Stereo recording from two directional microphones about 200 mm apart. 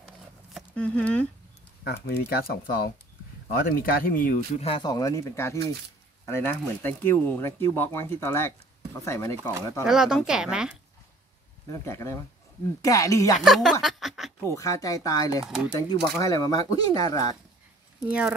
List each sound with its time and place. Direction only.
0.6 s speech: 5° left (ahead or behind)
1.9 s speech: 50° left (ahead or behind)
4.6 s speech: 25° left (ahead or behind)
9.8 s speech: centre (ahead or behind)
11.7 s speech: 15° left (ahead or behind)
13.4 s speech: centre (ahead or behind)
14.4 s speech: 15° left (ahead or behind)
15.4 s speech: 5° right (ahead or behind)
15.7 s speech: 20° left (ahead or behind)
18.0 s speech: 5° right (ahead or behind)